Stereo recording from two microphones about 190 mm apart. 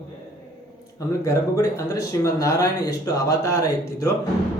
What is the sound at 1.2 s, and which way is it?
Speech, 15° left (ahead or behind).